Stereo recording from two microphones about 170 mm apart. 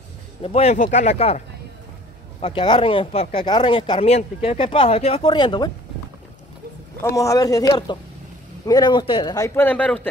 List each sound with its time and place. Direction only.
0.4 s speech: 35° left (ahead or behind)
2.4 s speech: 30° left (ahead or behind)
7.0 s speech: 15° left (ahead or behind)